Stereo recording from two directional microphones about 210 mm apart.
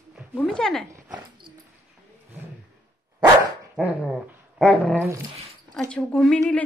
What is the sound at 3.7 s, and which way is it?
A woman's voice, 5° right (ahead or behind).